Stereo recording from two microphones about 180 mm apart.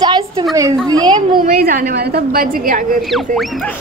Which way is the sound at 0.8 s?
20° right (ahead or behind).